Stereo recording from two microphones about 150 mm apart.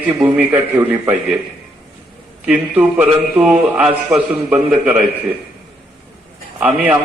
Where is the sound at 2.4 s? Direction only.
10° right (ahead or behind).